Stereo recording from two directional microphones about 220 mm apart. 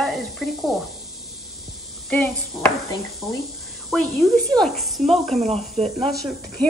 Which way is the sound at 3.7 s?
Centre (ahead or behind).